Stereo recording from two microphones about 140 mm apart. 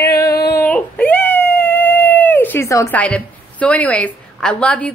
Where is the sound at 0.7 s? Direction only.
10° left (ahead or behind).